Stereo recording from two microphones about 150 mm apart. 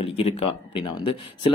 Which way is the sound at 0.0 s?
40° left (ahead or behind).